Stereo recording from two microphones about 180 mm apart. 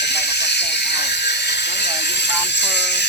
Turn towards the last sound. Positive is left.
turn(degrees=70)  # may be behind; listen again after turning